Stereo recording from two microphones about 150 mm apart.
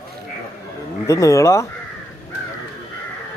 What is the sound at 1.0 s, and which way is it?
Speech, 20° left (ahead or behind).